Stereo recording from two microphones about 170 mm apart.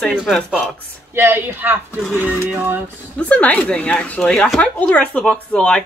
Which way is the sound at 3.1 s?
5° left (ahead or behind).